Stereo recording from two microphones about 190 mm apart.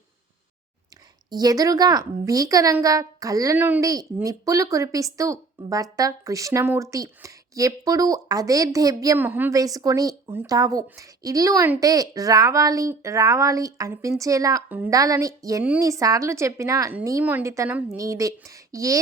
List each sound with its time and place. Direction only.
1.3 s a woman's voice: 20° right (ahead or behind)